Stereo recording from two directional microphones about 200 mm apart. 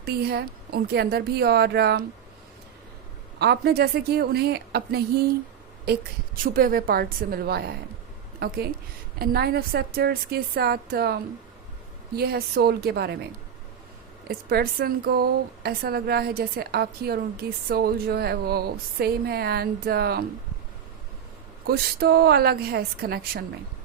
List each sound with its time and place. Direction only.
0.0 s a woman's voice: 50° right (ahead or behind)
3.3 s a woman's voice: 55° right (ahead or behind)
14.3 s a woman's voice: 50° right (ahead or behind)
21.7 s a woman's voice: 50° right (ahead or behind)